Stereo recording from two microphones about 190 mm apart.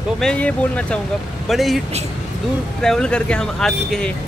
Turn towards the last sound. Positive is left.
turn(degrees=5)  # may be behind; listen again after turning